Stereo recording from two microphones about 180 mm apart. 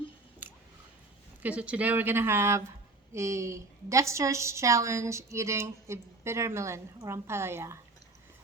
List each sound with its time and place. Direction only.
0.4 s squish: 10° right (ahead or behind)
1.4 s a woman's voice: 5° right (ahead or behind)